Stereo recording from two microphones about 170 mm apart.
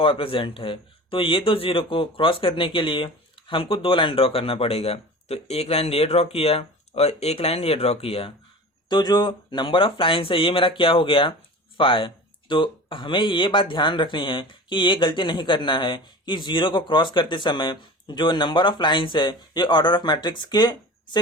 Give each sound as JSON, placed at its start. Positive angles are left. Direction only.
{"t": 0.0, "sound": "speech", "side_deg": 30}